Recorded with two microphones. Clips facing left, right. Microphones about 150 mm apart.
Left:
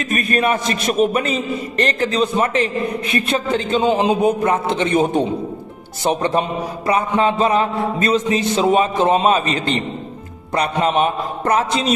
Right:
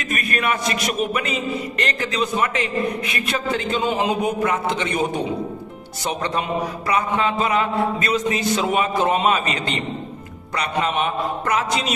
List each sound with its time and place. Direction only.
0.0 s a man's voice: 30° left (ahead or behind)
6.9 s a man's voice: 35° left (ahead or behind)